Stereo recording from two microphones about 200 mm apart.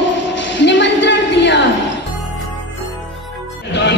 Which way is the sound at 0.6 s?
65° left (ahead or behind).